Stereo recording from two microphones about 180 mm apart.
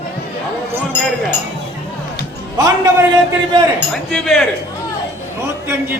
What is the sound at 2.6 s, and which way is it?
Speech, 20° right (ahead or behind).